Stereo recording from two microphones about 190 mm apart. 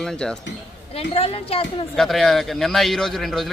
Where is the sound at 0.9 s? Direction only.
30° left (ahead or behind).